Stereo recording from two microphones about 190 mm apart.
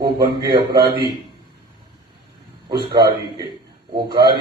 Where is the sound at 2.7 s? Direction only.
20° right (ahead or behind).